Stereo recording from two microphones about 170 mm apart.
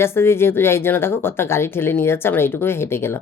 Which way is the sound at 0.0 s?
15° left (ahead or behind).